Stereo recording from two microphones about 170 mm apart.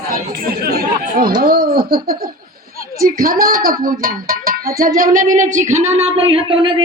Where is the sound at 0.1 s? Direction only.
65° right (ahead or behind).